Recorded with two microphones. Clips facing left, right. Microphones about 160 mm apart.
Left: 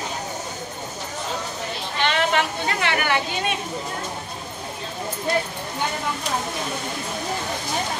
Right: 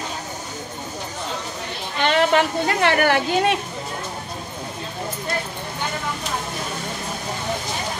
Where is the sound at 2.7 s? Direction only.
45° right (ahead or behind).